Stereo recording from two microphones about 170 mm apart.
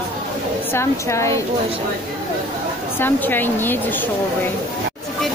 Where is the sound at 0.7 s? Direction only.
15° left (ahead or behind).